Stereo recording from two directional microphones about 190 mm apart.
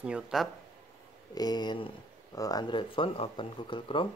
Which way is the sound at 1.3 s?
20° left (ahead or behind).